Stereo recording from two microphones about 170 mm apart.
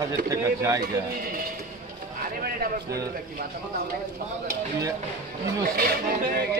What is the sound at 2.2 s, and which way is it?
Speech, 60° right (ahead or behind).